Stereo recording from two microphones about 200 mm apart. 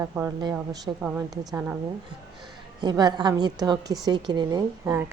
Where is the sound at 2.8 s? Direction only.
20° right (ahead or behind).